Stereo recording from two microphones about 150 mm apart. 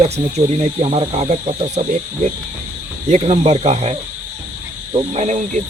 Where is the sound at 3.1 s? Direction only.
50° right (ahead or behind).